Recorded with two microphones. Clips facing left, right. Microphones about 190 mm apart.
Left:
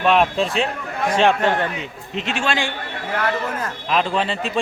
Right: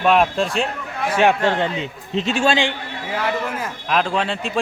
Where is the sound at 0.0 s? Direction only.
Centre (ahead or behind).